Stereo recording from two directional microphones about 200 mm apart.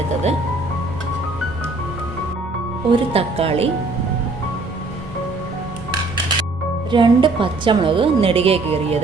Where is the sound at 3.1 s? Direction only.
30° right (ahead or behind).